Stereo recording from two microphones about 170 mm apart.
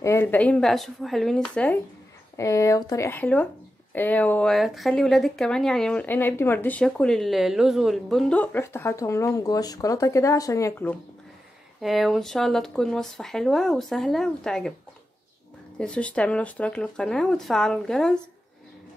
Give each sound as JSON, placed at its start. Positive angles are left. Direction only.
{"t": 0.0, "sound": "speech", "side_deg": 15}
{"t": 2.3, "sound": "speech", "side_deg": 20}
{"t": 11.8, "sound": "speech", "side_deg": 0}
{"t": 15.8, "sound": "speech", "side_deg": 5}